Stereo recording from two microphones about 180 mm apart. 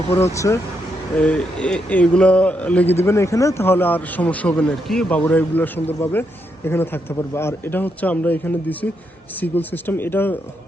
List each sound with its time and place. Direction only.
0.3 s speech: 15° left (ahead or behind)
1.1 s speech: 5° left (ahead or behind)